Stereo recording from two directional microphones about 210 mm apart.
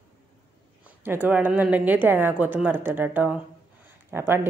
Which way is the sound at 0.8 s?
10° right (ahead or behind).